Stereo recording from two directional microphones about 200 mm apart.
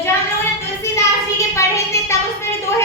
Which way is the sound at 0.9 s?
15° left (ahead or behind).